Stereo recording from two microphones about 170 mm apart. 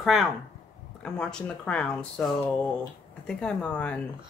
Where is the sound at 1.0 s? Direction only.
5° left (ahead or behind).